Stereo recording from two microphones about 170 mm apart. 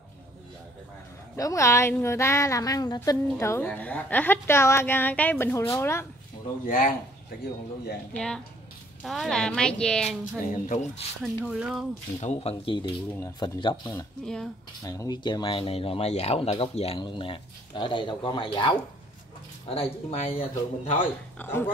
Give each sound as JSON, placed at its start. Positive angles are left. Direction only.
{"t": 1.3, "sound": "a woman's voice", "side_deg": 20}
{"t": 6.6, "sound": "speech", "side_deg": 50}
{"t": 8.1, "sound": "a woman's voice", "side_deg": 5}
{"t": 10.4, "sound": "speech", "side_deg": 45}
{"t": 11.2, "sound": "a woman's voice", "side_deg": -5}
{"t": 12.2, "sound": "a man's voice", "side_deg": 40}
{"t": 14.2, "sound": "a woman's voice", "side_deg": 5}
{"t": 14.8, "sound": "a man's voice", "side_deg": 20}
{"t": 21.4, "sound": "a woman's voice", "side_deg": 15}